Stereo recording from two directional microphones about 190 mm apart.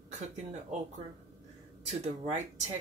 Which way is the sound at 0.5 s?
40° right (ahead or behind).